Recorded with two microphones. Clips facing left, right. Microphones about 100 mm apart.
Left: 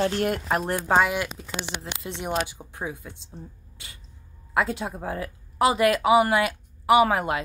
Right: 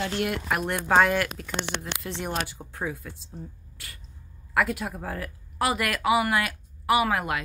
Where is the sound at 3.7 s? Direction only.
20° left (ahead or behind).